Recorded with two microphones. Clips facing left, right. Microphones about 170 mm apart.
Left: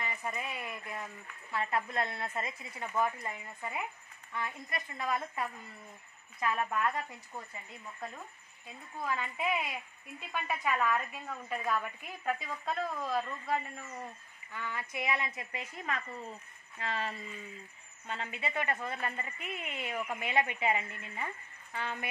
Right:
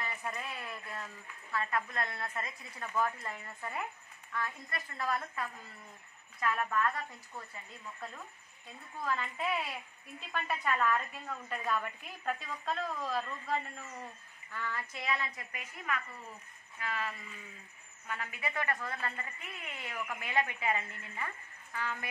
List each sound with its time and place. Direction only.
0.0 s a woman's voice: 10° left (ahead or behind)
9.0 s a woman's voice: 10° left (ahead or behind)